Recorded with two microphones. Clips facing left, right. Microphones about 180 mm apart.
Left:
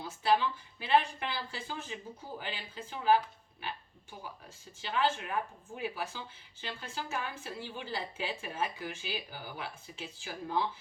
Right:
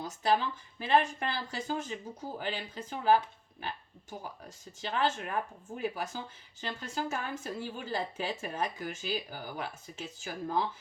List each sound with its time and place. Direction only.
0.0 s speech: 40° right (ahead or behind)